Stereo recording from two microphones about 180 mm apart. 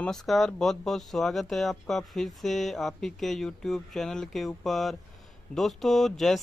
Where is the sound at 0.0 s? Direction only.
5° left (ahead or behind).